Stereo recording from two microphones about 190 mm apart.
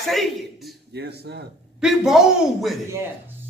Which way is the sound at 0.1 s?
Centre (ahead or behind).